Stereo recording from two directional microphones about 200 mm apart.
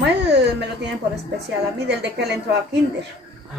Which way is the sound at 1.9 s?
60° right (ahead or behind).